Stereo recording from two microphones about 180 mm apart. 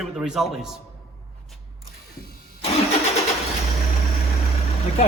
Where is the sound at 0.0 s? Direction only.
Centre (ahead or behind).